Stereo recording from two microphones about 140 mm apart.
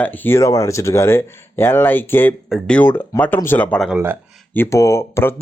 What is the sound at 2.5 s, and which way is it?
Speech, 5° left (ahead or behind).